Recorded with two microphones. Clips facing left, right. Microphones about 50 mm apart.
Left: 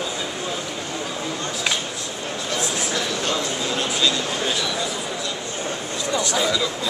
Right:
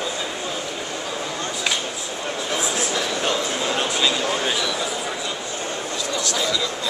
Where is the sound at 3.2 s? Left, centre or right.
Centre.